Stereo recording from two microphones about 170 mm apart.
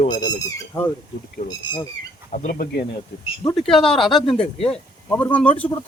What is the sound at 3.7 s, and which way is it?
A man's voice, centre (ahead or behind).